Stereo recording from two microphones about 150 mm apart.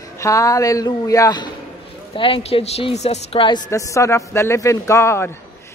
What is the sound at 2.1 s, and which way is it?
A woman's voice, 40° left (ahead or behind).